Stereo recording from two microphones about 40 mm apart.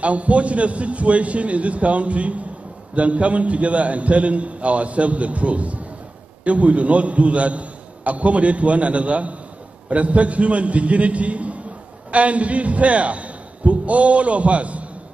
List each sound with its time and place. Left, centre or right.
0.0 s a man's voice: right